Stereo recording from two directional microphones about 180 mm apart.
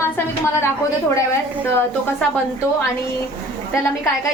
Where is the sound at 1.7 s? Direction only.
10° left (ahead or behind).